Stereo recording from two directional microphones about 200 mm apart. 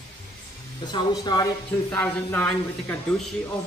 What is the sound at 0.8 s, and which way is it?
Speech, 20° left (ahead or behind).